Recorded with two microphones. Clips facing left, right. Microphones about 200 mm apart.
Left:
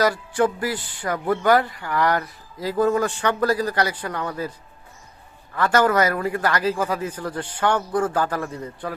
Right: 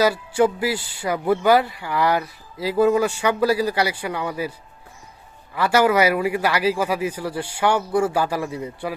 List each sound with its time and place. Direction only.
0.0 s a man's voice: 10° right (ahead or behind)
5.5 s a man's voice: 10° right (ahead or behind)